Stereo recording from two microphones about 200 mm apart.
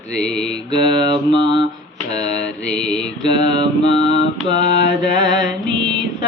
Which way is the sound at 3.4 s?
20° right (ahead or behind).